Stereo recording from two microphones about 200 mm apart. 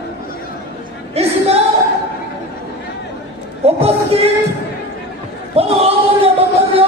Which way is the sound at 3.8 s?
30° right (ahead or behind).